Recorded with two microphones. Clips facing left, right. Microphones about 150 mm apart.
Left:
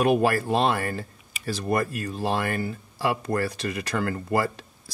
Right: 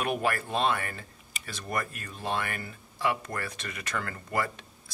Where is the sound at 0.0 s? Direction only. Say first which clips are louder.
Left 8 dB; 35° left (ahead or behind).